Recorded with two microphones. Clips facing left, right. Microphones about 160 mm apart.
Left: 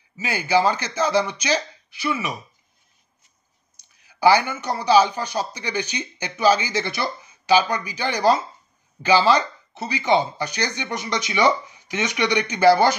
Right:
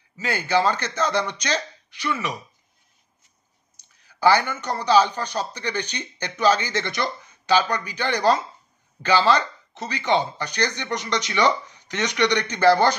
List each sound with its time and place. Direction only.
0.2 s speech: 10° left (ahead or behind)
4.0 s speech: 10° left (ahead or behind)